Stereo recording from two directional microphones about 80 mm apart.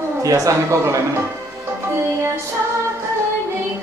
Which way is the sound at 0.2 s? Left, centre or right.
Right.